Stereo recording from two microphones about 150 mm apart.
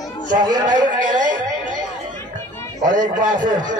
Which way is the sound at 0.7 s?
55° right (ahead or behind).